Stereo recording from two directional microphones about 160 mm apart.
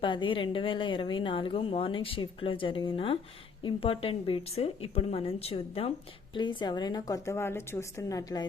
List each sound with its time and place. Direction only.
0.0 s speech: 30° left (ahead or behind)